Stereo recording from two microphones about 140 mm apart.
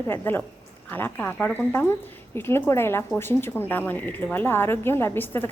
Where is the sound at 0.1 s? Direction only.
15° left (ahead or behind).